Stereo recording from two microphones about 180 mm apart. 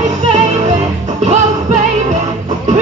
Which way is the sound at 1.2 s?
40° right (ahead or behind).